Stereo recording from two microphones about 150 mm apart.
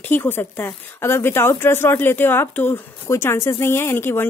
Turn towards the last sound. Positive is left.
turn(degrees=15)  # may be behind; listen again after turning